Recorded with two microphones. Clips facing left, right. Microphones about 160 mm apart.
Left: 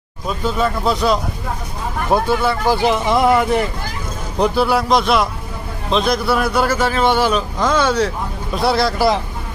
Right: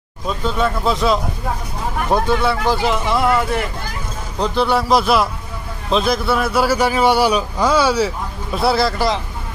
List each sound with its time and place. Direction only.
0.3 s a man's voice: 5° left (ahead or behind)
2.7 s speech: 15° left (ahead or behind)
4.4 s a man's voice: 5° left (ahead or behind)